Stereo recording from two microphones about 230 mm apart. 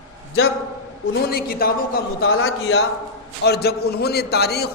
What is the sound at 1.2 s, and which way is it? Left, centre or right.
Speech, left.